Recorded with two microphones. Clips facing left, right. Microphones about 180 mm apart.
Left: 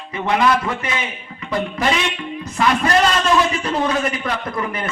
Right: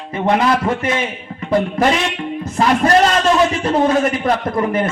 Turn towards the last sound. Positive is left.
turn(degrees=-45)  # may be behind; listen again after turning